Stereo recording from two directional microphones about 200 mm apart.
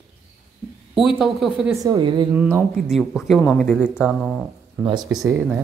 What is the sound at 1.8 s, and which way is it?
Speech, 20° right (ahead or behind).